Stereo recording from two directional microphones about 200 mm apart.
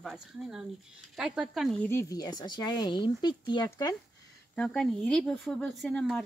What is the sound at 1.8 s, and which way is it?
Speech, 15° left (ahead or behind).